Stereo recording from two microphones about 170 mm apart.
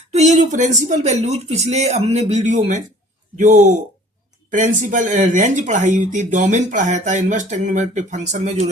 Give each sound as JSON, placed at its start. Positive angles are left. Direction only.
{"t": 0.1, "sound": "speech", "side_deg": -40}